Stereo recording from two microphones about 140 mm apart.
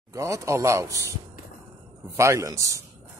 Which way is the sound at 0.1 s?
20° right (ahead or behind).